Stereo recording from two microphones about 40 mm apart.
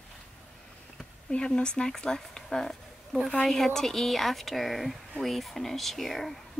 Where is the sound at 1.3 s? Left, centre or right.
Left.